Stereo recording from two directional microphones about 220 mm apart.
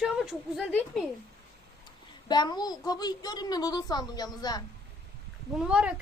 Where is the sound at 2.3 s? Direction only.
20° left (ahead or behind).